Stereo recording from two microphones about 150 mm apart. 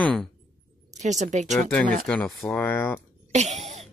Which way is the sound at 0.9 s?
50° right (ahead or behind).